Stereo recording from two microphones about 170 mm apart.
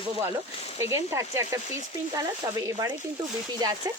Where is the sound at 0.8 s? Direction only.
15° right (ahead or behind).